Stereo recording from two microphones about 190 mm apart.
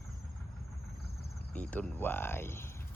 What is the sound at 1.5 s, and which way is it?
Speech, 10° left (ahead or behind).